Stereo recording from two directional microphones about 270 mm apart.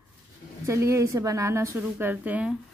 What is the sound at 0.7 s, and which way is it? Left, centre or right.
A woman's voice, centre.